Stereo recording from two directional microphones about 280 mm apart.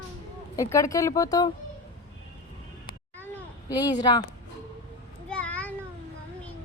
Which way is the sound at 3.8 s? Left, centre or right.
Centre.